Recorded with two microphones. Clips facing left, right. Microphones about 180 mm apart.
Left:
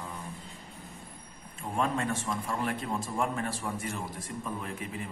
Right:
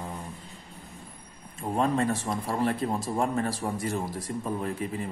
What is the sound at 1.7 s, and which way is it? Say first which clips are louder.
A man's voice: right 5 dB; 35° right (ahead or behind).